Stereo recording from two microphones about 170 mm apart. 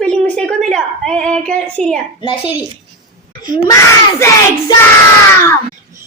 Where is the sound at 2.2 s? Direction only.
30° left (ahead or behind).